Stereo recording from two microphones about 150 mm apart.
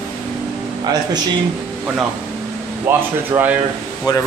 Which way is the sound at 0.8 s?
25° right (ahead or behind).